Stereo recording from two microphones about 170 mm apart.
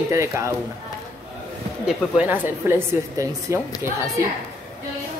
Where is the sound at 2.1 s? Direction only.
10° right (ahead or behind).